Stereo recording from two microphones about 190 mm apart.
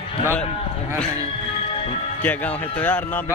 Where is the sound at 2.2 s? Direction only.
10° left (ahead or behind).